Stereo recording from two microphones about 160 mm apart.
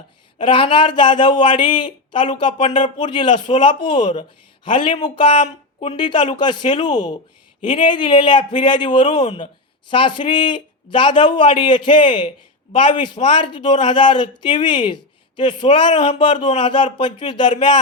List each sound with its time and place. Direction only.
0.3 s a man's voice: 30° left (ahead or behind)